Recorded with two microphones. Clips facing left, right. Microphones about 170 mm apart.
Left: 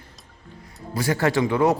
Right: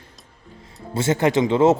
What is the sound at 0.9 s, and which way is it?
Speech, 25° right (ahead or behind).